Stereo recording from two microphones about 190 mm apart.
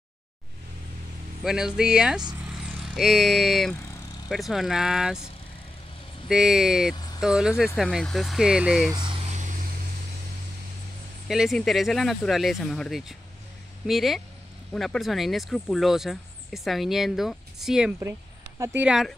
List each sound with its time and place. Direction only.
1.4 s speech: 5° right (ahead or behind)
6.2 s speech: 5° right (ahead or behind)
8.9 s vehicle: 25° right (ahead or behind)
11.2 s speech: centre (ahead or behind)